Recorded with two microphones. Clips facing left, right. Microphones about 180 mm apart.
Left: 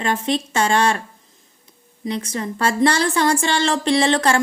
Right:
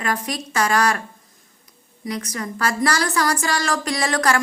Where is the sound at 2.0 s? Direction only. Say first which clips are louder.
Left 3 dB; 25° left (ahead or behind).